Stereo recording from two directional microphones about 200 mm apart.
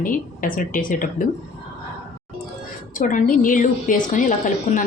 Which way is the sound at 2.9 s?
40° left (ahead or behind).